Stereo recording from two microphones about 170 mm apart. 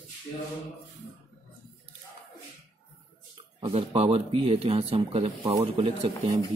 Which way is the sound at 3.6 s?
35° right (ahead or behind).